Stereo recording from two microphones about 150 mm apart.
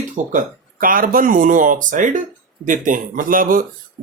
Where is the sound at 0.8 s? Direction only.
70° right (ahead or behind).